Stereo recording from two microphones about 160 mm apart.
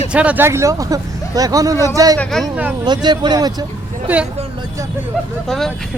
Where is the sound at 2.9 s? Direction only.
30° right (ahead or behind).